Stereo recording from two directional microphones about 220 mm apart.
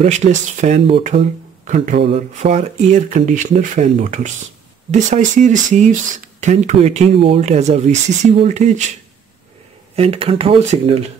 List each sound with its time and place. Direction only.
0.0 s speech: 30° right (ahead or behind)
9.9 s speech: 25° right (ahead or behind)